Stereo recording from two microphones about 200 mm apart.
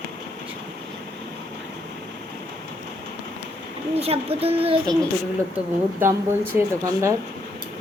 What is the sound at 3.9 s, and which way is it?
A child's voice, 30° right (ahead or behind).